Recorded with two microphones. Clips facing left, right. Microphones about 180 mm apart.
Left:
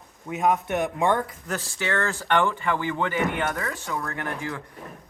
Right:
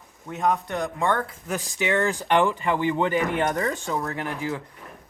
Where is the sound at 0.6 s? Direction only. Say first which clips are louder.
Left 2 dB; 20° left (ahead or behind).